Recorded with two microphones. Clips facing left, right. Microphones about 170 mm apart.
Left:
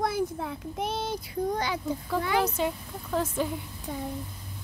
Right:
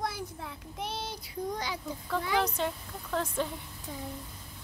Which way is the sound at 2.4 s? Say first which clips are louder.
Left 4 dB; 5° left (ahead or behind).